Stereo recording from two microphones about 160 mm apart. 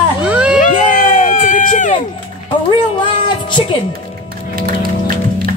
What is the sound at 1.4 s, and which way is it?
Run, 55° left (ahead or behind).